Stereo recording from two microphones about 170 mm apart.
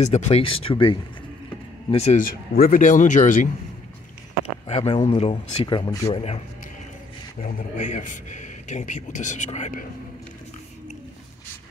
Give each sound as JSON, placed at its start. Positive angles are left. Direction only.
{"t": 0.1, "sound": "a man's voice", "side_deg": 40}
{"t": 4.6, "sound": "speech", "side_deg": 35}
{"t": 7.4, "sound": "a man's voice", "side_deg": 45}